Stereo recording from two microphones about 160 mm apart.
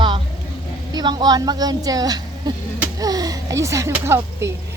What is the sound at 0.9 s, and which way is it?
A child's voice, 25° right (ahead or behind).